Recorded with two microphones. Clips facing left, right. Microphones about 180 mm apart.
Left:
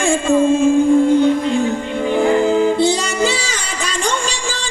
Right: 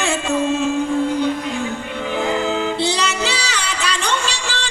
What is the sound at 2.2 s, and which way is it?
Music, 50° left (ahead or behind).